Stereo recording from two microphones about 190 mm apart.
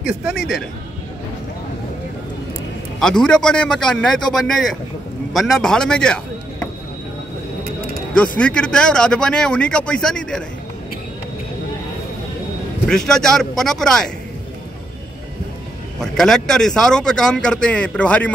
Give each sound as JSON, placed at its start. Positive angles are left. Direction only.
{"t": 0.0, "sound": "speech", "side_deg": -5}
{"t": 3.0, "sound": "a man's voice", "side_deg": 5}
{"t": 8.1, "sound": "speech", "side_deg": 5}
{"t": 12.8, "sound": "speech", "side_deg": 5}
{"t": 16.0, "sound": "speech", "side_deg": 0}